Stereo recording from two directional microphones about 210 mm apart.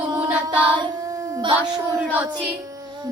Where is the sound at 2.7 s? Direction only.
15° right (ahead or behind).